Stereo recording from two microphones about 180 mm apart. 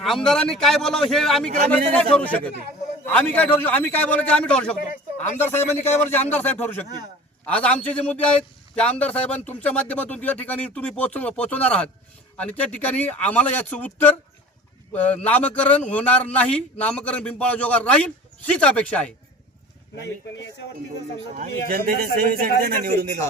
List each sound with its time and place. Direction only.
0.0 s a man's voice: centre (ahead or behind)
20.3 s speech: 90° left
21.7 s a man's voice: 55° right (ahead or behind)